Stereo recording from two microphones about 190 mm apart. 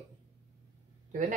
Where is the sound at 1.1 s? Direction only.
40° right (ahead or behind).